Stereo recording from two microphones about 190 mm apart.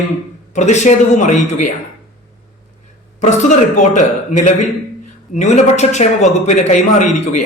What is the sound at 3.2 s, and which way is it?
A man's voice, 40° left (ahead or behind).